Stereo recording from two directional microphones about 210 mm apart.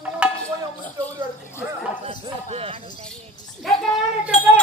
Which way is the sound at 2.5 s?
30° right (ahead or behind).